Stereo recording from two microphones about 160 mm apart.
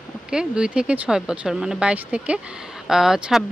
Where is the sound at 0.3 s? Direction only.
5° right (ahead or behind).